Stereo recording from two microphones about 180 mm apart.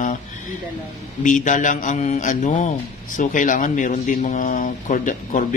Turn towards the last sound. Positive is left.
turn(degrees=45)  # may be behind; listen again after turning